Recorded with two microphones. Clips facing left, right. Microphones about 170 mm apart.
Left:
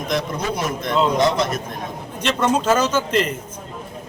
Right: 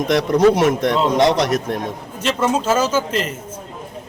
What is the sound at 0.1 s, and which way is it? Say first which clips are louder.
A man's voice: right 10 dB; 75° right (ahead or behind).